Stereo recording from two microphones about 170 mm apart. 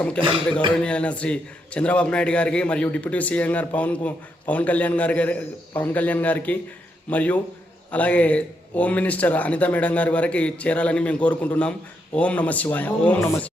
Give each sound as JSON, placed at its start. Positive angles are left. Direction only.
{"t": 0.2, "sound": "speech", "side_deg": -30}
{"t": 0.8, "sound": "a man's voice", "side_deg": 5}